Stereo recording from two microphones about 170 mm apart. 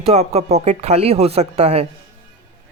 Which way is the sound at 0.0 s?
40° right (ahead or behind).